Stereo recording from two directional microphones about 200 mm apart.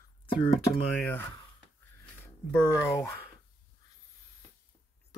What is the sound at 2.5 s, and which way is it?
Speech, 15° left (ahead or behind).